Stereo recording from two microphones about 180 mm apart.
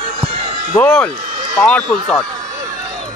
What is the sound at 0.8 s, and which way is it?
Speech, 5° left (ahead or behind).